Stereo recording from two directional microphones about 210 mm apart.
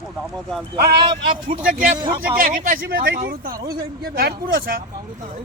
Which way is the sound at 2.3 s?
40° right (ahead or behind).